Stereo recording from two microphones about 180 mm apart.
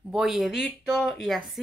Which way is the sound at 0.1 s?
Centre (ahead or behind).